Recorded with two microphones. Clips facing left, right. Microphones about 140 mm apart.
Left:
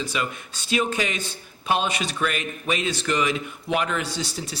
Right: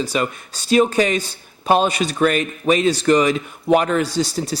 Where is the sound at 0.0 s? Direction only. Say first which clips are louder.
Right 7 dB; 40° right (ahead or behind).